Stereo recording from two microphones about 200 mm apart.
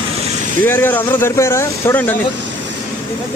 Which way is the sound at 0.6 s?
10° left (ahead or behind).